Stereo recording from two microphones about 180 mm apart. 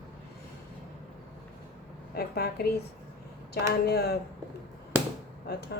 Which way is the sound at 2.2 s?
60° left (ahead or behind).